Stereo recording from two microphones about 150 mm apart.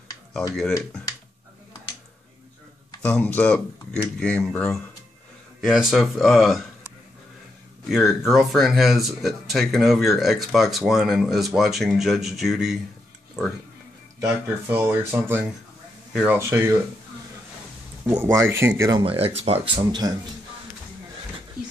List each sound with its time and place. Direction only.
3.0 s speech: 10° left (ahead or behind)
7.9 s speech: centre (ahead or behind)
14.2 s speech: 15° right (ahead or behind)
16.3 s speech: 15° right (ahead or behind)
18.0 s speech: 20° right (ahead or behind)
19.0 s speech: 40° right (ahead or behind)